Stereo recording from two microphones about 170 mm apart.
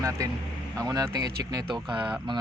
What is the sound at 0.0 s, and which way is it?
Speech, 20° right (ahead or behind).